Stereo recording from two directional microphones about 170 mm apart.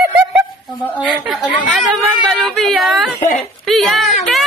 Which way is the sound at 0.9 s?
5° right (ahead or behind).